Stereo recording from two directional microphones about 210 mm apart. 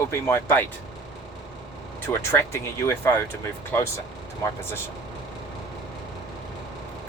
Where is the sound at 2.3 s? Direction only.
10° left (ahead or behind).